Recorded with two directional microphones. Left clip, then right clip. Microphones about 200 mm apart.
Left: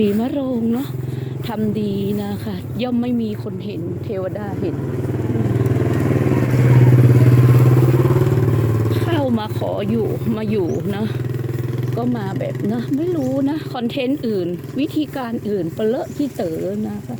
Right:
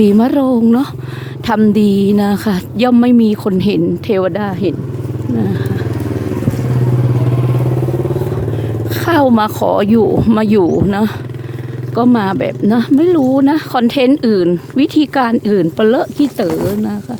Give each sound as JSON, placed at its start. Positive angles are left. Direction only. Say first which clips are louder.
{"t": 0.0, "sound": "speech", "louder": "right 8 dB", "side_deg": -45}
{"t": 8.9, "sound": "speech", "louder": "right 11 dB", "side_deg": -35}
{"t": 11.9, "sound": "speech", "louder": "right 12 dB", "side_deg": -50}